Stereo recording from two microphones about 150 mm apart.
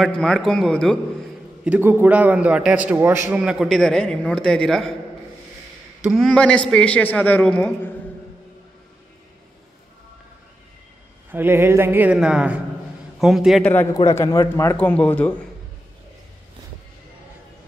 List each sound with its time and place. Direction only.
0.0 s a man's voice: 5° left (ahead or behind)
1.6 s a man's voice: 10° right (ahead or behind)
6.0 s a man's voice: centre (ahead or behind)
11.3 s a man's voice: 15° right (ahead or behind)
13.9 s a man's voice: 20° left (ahead or behind)